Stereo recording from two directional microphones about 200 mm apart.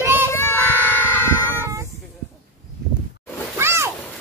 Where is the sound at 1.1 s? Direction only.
10° left (ahead or behind).